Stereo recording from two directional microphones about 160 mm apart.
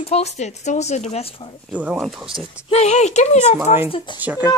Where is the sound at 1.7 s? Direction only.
10° right (ahead or behind).